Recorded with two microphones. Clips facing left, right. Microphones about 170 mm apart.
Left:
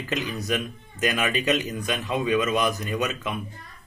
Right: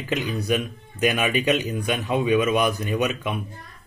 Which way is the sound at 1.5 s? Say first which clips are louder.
Right 2 dB; 15° right (ahead or behind).